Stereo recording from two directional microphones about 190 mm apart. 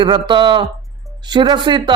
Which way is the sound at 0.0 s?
25° right (ahead or behind).